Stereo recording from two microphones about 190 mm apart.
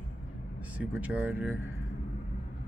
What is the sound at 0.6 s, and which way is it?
Speech, 5° right (ahead or behind).